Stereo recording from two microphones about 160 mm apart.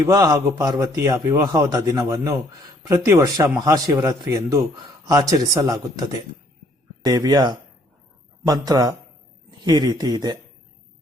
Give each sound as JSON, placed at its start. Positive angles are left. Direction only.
{"t": 0.0, "sound": "a man's voice", "side_deg": -25}